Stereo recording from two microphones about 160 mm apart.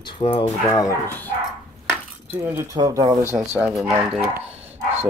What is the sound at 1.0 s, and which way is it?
Speech, 10° left (ahead or behind).